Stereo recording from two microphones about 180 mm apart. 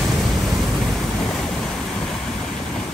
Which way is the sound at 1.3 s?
5° left (ahead or behind).